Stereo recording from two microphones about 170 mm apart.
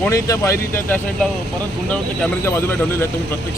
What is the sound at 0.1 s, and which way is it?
Speech, 20° left (ahead or behind).